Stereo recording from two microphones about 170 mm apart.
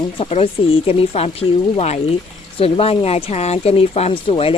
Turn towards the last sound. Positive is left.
turn(degrees=30)  # may be behind; listen again after turning